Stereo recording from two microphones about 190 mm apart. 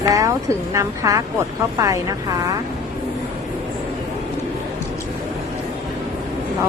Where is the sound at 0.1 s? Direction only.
15° right (ahead or behind).